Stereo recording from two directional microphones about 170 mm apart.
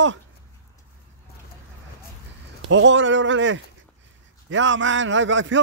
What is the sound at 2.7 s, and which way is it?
A man's voice, 90° right.